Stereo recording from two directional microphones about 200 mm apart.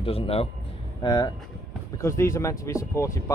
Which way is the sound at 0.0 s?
30° left (ahead or behind).